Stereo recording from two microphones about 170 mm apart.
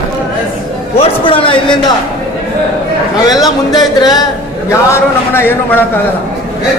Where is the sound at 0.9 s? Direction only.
30° left (ahead or behind).